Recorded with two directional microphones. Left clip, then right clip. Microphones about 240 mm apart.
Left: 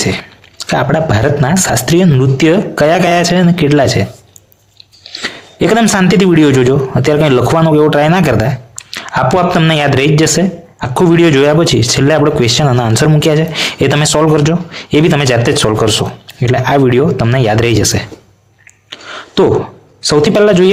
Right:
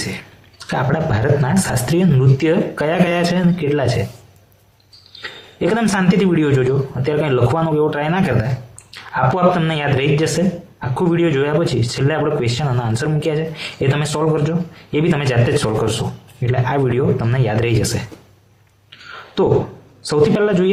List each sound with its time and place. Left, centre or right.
0.0 s speech: left
5.1 s speech: left
18.9 s a sound: left
20.0 s speech: left